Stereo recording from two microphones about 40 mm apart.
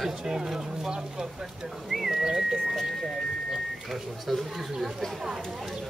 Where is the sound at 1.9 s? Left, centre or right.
Centre.